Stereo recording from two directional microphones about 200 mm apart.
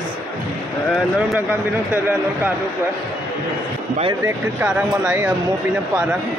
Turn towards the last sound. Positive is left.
turn(degrees=-15)  # may be behind; listen again after turning